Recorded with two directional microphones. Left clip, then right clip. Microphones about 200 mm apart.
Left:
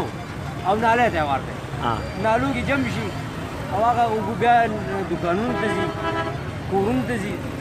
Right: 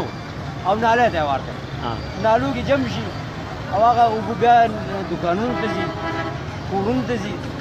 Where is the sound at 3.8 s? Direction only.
10° right (ahead or behind).